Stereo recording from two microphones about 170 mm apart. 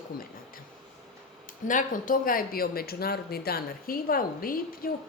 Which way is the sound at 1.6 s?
50° left (ahead or behind).